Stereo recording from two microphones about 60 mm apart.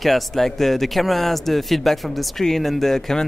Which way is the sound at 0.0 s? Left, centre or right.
Centre.